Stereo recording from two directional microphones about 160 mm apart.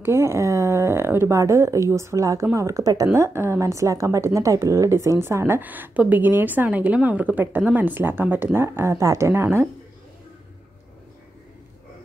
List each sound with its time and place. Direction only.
0.0 s a woman's voice: 15° right (ahead or behind)